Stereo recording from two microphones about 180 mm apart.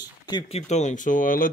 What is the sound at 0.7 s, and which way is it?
Speech, 40° left (ahead or behind).